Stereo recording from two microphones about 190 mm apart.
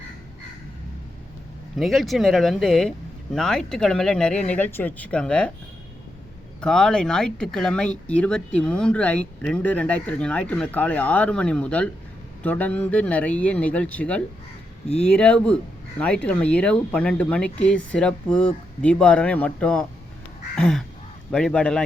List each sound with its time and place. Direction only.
1.8 s speech: centre (ahead or behind)
6.6 s speech: 5° left (ahead or behind)